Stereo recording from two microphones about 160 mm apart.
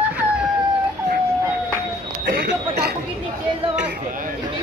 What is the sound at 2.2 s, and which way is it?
Speech, 80° right.